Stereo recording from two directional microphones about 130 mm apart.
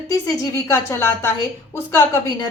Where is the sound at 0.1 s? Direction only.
25° left (ahead or behind).